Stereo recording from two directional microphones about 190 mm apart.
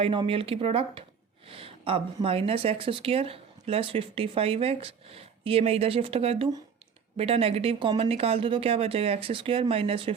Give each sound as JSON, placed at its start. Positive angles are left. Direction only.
{"t": 0.0, "sound": "speech", "side_deg": -30}